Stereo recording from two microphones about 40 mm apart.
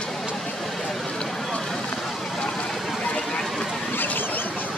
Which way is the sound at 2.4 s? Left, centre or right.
Centre.